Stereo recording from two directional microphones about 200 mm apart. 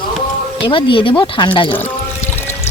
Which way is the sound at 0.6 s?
25° left (ahead or behind).